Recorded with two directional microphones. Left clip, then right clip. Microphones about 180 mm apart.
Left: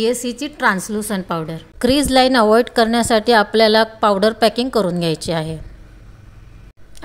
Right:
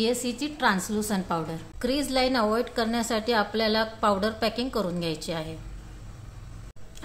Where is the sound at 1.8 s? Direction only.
45° left (ahead or behind).